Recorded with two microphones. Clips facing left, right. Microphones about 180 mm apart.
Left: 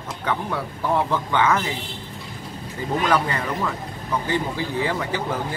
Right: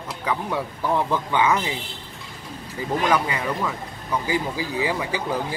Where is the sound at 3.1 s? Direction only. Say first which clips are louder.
Even; 5° right (ahead or behind).